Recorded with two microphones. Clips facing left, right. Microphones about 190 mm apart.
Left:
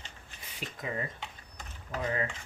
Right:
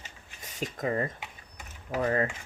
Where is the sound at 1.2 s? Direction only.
10° right (ahead or behind).